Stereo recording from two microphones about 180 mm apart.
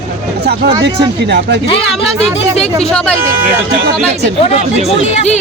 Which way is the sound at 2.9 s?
5° left (ahead or behind).